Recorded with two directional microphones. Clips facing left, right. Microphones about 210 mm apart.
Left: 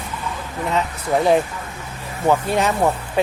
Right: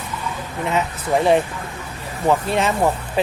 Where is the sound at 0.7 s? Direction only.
Centre (ahead or behind).